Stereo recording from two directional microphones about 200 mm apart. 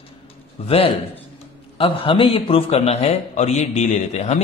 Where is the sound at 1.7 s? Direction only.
25° left (ahead or behind).